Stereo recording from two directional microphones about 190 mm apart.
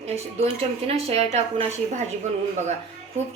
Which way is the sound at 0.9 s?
30° right (ahead or behind).